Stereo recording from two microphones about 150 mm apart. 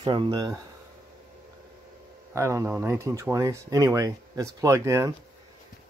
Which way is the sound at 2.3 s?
20° right (ahead or behind).